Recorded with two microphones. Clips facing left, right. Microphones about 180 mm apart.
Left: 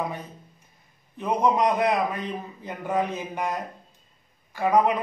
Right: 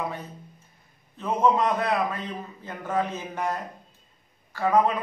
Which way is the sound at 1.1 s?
15° left (ahead or behind).